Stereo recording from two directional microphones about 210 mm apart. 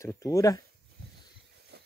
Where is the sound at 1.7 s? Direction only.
50° right (ahead or behind).